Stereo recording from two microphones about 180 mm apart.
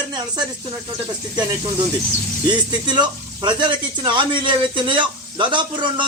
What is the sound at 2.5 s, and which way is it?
Speech, 25° right (ahead or behind).